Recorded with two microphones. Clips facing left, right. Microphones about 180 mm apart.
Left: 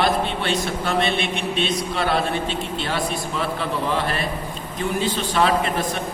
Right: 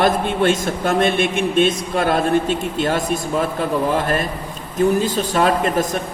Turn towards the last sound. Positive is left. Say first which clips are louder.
# right 3 dB
turn(degrees=-45)  # may be behind; listen again after turning